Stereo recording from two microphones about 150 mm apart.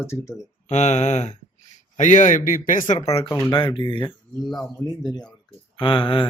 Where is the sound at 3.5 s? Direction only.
35° left (ahead or behind).